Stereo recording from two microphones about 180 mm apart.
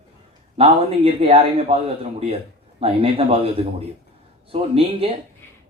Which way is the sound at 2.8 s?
30° right (ahead or behind).